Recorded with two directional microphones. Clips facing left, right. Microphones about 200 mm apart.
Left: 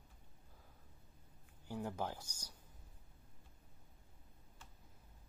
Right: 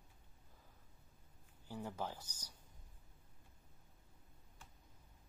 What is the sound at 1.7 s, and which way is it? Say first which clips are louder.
Speech: left 3 dB; 10° left (ahead or behind).